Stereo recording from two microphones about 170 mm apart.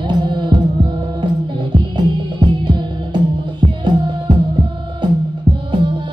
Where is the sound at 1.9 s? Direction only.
25° right (ahead or behind).